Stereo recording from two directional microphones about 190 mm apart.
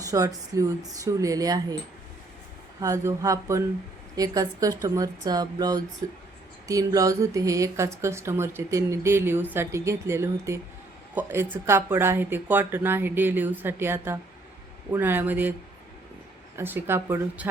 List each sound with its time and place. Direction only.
0.0 s speech: 20° right (ahead or behind)
2.8 s speech: 15° right (ahead or behind)
16.6 s speech: 10° right (ahead or behind)